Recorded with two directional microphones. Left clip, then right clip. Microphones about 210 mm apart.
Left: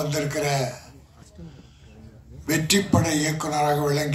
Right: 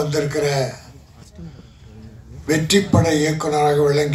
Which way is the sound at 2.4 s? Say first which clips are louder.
Right 5 dB; 50° left (ahead or behind).